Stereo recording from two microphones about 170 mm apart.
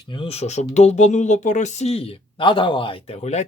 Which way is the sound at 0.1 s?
35° left (ahead or behind).